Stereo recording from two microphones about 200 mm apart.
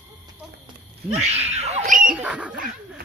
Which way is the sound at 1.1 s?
30° right (ahead or behind).